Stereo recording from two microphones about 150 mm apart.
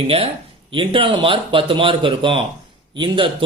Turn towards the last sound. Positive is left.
turn(degrees=-35)  # may be behind; listen again after turning